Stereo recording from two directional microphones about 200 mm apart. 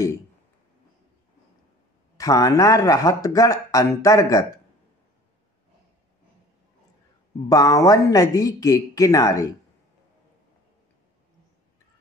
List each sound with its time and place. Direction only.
2.1 s speech: 15° left (ahead or behind)
7.4 s speech: 15° left (ahead or behind)